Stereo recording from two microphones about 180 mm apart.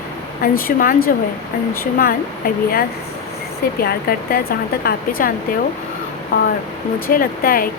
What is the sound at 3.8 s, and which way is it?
A woman's voice, 55° left (ahead or behind).